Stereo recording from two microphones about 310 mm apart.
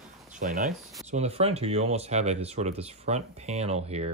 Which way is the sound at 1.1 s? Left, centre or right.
Right.